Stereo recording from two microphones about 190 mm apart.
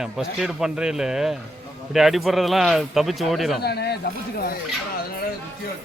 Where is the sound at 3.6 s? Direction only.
60° left (ahead or behind).